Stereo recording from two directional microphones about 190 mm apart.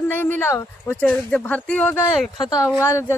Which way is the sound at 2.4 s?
20° left (ahead or behind).